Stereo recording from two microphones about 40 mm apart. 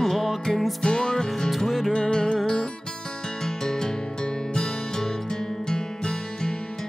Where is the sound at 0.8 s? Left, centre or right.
Centre.